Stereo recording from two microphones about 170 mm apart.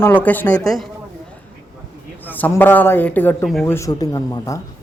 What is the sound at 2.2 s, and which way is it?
A man's voice, 10° left (ahead or behind).